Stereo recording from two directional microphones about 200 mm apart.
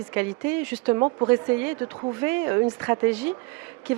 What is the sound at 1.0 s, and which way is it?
Speech, 25° right (ahead or behind).